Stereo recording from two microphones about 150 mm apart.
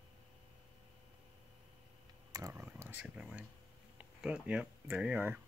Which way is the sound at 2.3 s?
20° right (ahead or behind).